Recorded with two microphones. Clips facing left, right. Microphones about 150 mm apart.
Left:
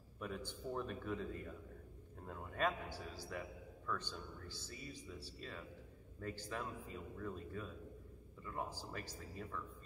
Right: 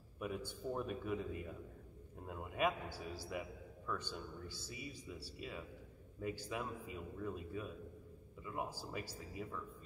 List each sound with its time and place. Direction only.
0.2 s a man's voice: 10° right (ahead or behind)